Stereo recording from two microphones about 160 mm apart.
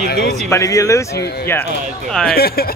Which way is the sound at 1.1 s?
90° left.